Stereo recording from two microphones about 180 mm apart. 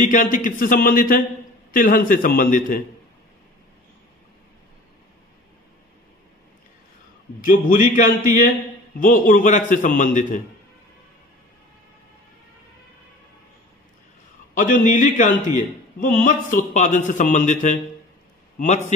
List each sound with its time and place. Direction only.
0.0 s a man's voice: 45° left (ahead or behind)
7.4 s a man's voice: 45° left (ahead or behind)
14.5 s a man's voice: 45° left (ahead or behind)